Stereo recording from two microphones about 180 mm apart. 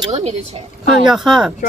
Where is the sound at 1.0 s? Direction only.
Centre (ahead or behind).